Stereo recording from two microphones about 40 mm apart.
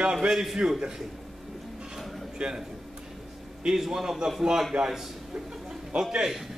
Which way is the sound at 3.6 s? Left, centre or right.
Centre.